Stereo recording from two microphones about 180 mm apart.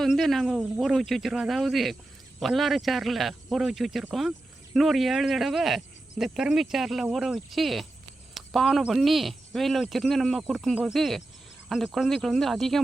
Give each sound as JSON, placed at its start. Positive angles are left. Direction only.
{"t": 0.0, "sound": "speech", "side_deg": 0}